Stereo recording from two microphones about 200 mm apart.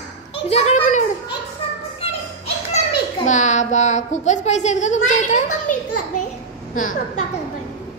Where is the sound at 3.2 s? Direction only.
35° left (ahead or behind).